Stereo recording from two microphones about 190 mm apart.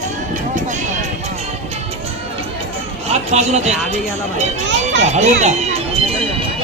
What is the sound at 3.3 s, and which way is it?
Speech, 35° right (ahead or behind).